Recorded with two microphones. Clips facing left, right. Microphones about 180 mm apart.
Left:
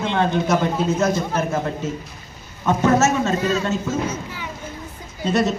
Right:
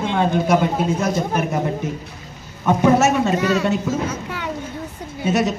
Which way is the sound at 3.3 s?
75° right (ahead or behind).